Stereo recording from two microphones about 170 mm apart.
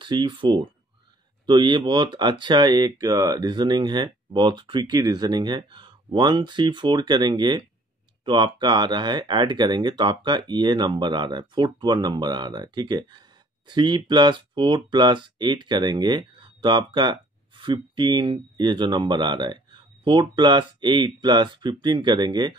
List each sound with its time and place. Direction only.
0.0 s speech: 25° right (ahead or behind)